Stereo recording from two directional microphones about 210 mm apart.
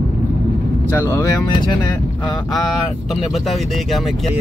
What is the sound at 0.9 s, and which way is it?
Speech, 15° left (ahead or behind).